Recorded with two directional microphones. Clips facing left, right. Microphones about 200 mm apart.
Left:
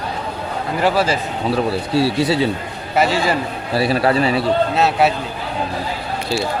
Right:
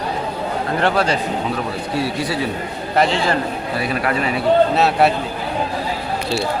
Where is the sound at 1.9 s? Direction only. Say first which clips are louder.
Left 5 dB; 30° left (ahead or behind).